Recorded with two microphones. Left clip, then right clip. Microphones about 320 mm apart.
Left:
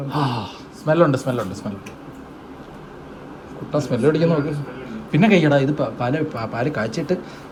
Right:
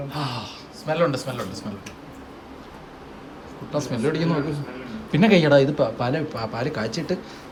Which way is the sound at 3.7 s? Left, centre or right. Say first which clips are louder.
Left 6 dB; centre.